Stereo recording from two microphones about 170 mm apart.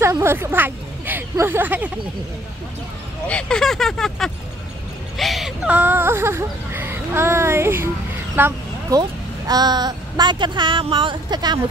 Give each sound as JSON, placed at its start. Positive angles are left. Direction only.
{"t": 0.0, "sound": "speech", "side_deg": -15}
{"t": 3.3, "sound": "speech", "side_deg": 5}